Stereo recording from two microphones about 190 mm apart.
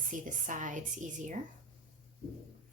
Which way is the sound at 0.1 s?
45° right (ahead or behind).